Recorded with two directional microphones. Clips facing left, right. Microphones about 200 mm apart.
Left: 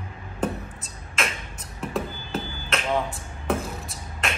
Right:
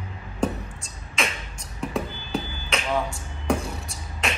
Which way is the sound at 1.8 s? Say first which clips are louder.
Right 1 dB; centre (ahead or behind).